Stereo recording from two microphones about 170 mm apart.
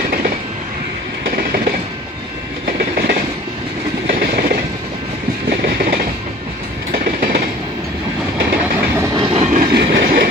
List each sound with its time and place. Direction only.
1.3 s train: 65° right (ahead or behind)
6.9 s train: 50° right (ahead or behind)
8.9 s train: 15° right (ahead or behind)
9.2 s train: 35° right (ahead or behind)
9.7 s train: 75° right (ahead or behind)